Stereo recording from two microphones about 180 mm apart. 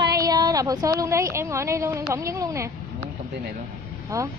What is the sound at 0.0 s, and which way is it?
A woman's voice, 20° right (ahead or behind).